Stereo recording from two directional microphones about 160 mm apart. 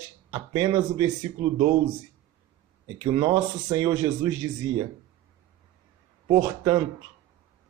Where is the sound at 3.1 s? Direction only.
20° right (ahead or behind).